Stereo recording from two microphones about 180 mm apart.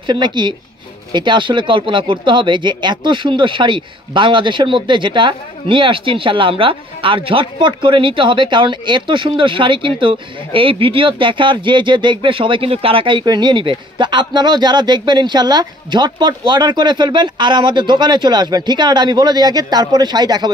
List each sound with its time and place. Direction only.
0.0 s speech: 25° right (ahead or behind)